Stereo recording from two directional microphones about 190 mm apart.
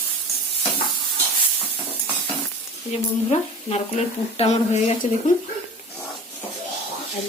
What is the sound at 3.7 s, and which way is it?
Speech, 35° left (ahead or behind).